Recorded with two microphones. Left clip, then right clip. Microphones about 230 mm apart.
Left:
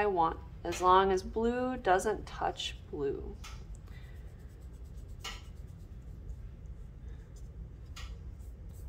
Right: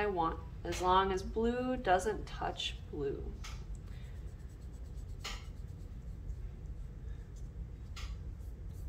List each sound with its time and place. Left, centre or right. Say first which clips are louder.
0.0 s speech: left 5 dB; left